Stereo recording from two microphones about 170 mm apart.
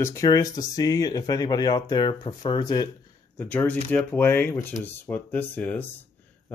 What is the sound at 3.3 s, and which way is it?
Speech, 10° left (ahead or behind).